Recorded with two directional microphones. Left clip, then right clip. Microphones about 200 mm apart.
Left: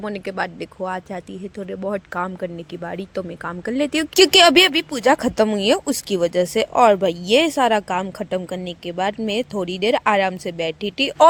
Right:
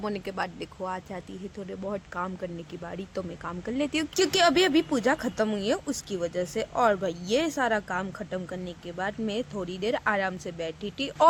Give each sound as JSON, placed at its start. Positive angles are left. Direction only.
{"t": 0.0, "sound": "speech", "side_deg": 20}
{"t": 4.1, "sound": "speech", "side_deg": 40}